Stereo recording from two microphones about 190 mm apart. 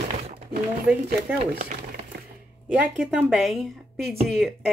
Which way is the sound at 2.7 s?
5° right (ahead or behind).